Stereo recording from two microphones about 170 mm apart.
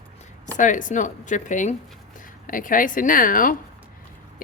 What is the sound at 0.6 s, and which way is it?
Speech, 50° left (ahead or behind).